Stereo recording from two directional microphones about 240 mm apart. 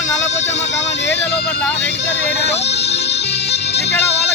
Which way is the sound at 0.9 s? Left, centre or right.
Left.